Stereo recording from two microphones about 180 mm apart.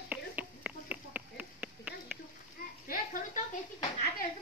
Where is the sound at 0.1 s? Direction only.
10° right (ahead or behind).